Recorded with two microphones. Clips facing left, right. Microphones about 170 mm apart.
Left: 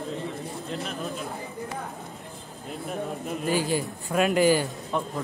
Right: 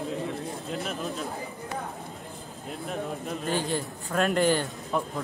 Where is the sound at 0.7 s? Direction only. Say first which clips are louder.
Even; centre (ahead or behind).